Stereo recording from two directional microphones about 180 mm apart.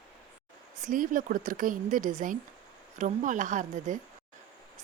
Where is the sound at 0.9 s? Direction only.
50° right (ahead or behind).